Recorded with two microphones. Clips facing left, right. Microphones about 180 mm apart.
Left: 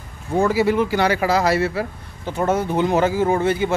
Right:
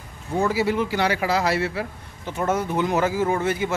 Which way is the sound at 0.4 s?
55° left (ahead or behind).